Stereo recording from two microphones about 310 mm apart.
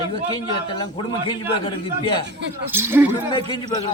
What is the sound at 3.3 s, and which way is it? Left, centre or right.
Speech, centre.